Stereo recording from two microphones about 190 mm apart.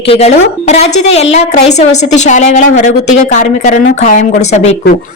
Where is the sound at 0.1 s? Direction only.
35° left (ahead or behind).